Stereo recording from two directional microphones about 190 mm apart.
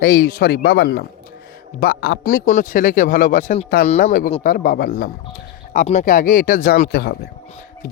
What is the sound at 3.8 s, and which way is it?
Speech, 35° left (ahead or behind).